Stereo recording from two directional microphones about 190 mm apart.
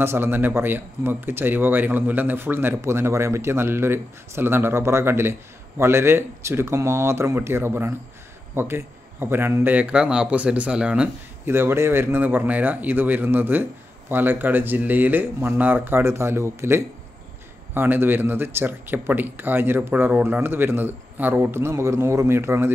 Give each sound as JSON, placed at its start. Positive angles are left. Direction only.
{"t": 0.0, "sound": "a man's voice", "side_deg": -10}